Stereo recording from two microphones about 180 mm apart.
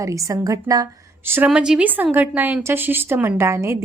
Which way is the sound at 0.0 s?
15° right (ahead or behind).